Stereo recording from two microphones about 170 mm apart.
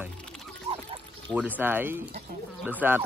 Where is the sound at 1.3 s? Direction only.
10° right (ahead or behind).